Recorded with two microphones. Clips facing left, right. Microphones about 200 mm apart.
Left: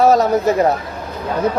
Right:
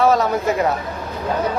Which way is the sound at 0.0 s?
40° left (ahead or behind).